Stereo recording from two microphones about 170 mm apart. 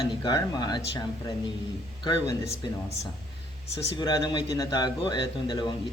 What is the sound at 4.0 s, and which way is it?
A man's voice, 25° left (ahead or behind).